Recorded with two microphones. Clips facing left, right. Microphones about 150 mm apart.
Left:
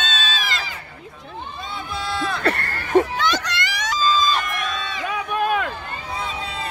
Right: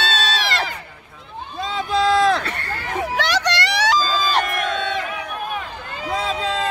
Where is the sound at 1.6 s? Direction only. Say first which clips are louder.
Right 12 dB; 90° right.